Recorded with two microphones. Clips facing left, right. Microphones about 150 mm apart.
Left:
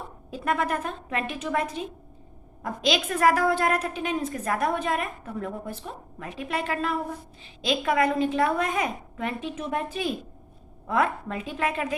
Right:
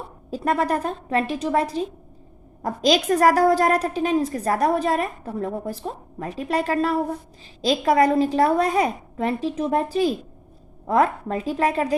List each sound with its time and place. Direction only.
0.3 s a woman's voice: 35° right (ahead or behind)